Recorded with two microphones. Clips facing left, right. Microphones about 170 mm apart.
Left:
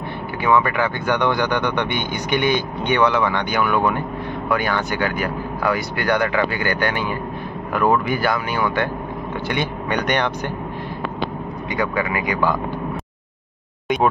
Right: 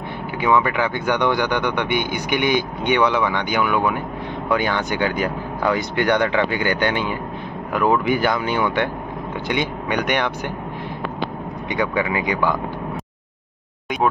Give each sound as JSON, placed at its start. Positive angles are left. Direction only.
{"t": 0.4, "sound": "speech", "side_deg": -15}
{"t": 11.7, "sound": "speech", "side_deg": -20}